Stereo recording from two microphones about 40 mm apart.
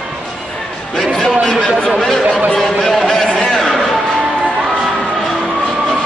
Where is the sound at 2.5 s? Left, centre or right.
Centre.